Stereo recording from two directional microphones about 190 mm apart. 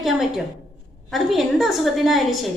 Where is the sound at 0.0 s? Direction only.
Centre (ahead or behind).